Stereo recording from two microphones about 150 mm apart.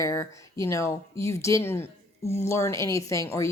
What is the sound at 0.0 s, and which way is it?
A woman's voice, 20° left (ahead or behind).